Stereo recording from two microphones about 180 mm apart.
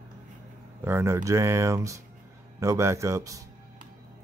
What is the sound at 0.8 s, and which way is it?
Speech, 15° right (ahead or behind).